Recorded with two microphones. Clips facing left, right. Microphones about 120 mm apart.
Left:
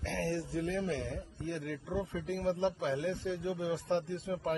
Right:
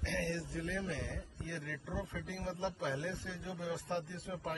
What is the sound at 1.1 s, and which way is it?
A man's voice, 20° left (ahead or behind).